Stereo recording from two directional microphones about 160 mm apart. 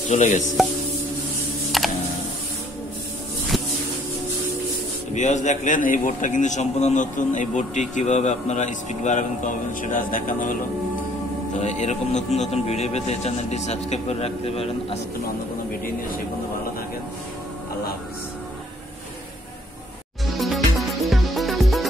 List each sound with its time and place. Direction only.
0.1 s a man's voice: 45° left (ahead or behind)
0.6 s music: centre (ahead or behind)
1.7 s computer keyboard: centre (ahead or behind)
5.1 s a man's voice: 50° left (ahead or behind)
11.6 s a man's voice: 45° left (ahead or behind)
20.3 s music: centre (ahead or behind)